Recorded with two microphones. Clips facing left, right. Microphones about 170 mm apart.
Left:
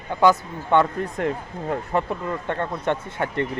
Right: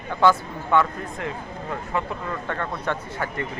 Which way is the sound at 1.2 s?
40° left (ahead or behind).